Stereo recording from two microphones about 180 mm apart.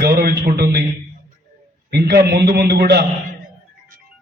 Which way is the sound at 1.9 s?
65° right (ahead or behind).